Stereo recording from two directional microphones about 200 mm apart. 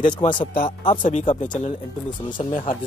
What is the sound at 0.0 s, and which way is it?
Speech, 25° left (ahead or behind).